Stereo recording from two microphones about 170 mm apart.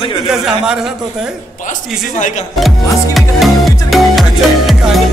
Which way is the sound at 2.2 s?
45° left (ahead or behind).